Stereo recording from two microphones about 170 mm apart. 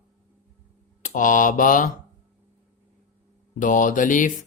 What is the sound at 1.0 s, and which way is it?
Speech, 50° left (ahead or behind).